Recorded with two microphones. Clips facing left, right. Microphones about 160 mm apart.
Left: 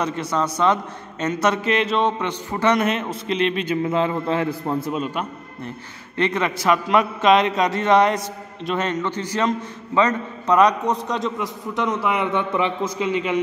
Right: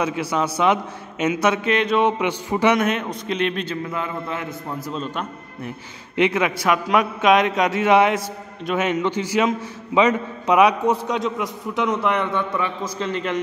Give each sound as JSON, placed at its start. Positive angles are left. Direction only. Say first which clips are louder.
{"t": 0.0, "sound": "a man's voice", "louder": "right 1 dB", "side_deg": -5}
{"t": 2.0, "sound": "a man's voice", "louder": "right 2 dB", "side_deg": -10}
{"t": 2.8, "sound": "a man's voice", "louder": "even", "side_deg": 0}
{"t": 3.6, "sound": "a man's voice", "louder": "left 6 dB", "side_deg": 25}
{"t": 4.9, "sound": "a man's voice", "louder": "left 3 dB", "side_deg": 5}
{"t": 6.1, "sound": "a man's voice", "louder": "right 2 dB", "side_deg": -10}
{"t": 12.4, "sound": "a man's voice", "louder": "left 2 dB", "side_deg": 20}
{"t": 13.0, "sound": "a man's voice", "louder": "left 2 dB", "side_deg": 5}